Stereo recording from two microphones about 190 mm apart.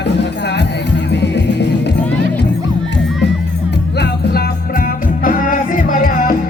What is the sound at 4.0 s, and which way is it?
Music, 50° left (ahead or behind).